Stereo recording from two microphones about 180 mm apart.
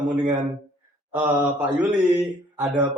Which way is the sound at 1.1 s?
10° right (ahead or behind).